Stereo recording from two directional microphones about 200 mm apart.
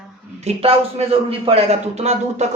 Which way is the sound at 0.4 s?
30° right (ahead or behind).